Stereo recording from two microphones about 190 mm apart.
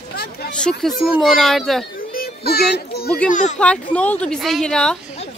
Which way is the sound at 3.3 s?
40° left (ahead or behind).